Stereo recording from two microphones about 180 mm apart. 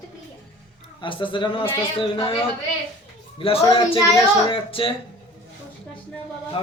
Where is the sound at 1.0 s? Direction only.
25° left (ahead or behind).